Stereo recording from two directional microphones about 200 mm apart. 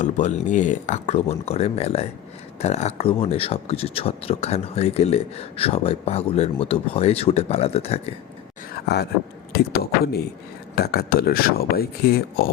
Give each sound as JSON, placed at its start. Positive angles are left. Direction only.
{"t": 0.0, "sound": "speech", "side_deg": 35}
{"t": 8.7, "sound": "a sound", "side_deg": 55}
{"t": 9.5, "sound": "speech", "side_deg": 50}
{"t": 10.8, "sound": "speech", "side_deg": 50}